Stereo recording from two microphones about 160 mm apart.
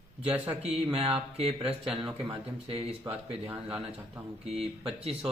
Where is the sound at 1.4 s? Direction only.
35° right (ahead or behind).